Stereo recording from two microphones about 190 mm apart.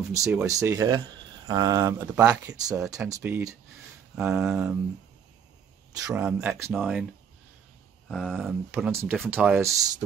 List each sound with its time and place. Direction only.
0.1 s speech: 15° right (ahead or behind)
5.9 s speech: 15° right (ahead or behind)
8.1 s speech: 5° right (ahead or behind)